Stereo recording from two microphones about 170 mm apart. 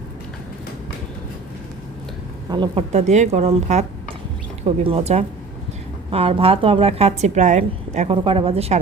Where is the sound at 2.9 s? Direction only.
40° right (ahead or behind).